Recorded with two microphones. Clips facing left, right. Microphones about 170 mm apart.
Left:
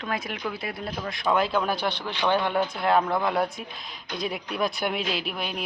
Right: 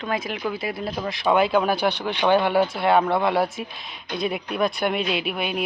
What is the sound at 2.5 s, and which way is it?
Speech, 5° right (ahead or behind).